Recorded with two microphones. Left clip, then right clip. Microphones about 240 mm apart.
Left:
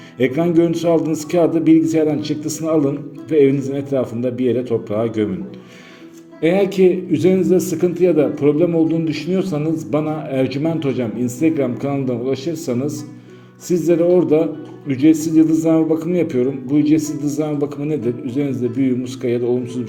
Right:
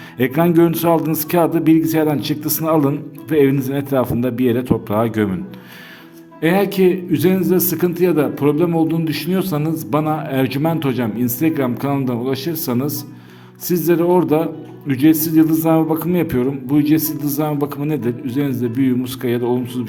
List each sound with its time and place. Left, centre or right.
0.2 s a man's voice: right
6.4 s a man's voice: right